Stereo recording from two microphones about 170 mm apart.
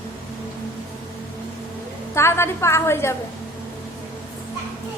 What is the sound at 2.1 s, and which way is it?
A woman's voice, 15° left (ahead or behind).